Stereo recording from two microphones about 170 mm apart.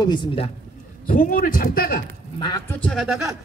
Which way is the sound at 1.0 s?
55° left (ahead or behind).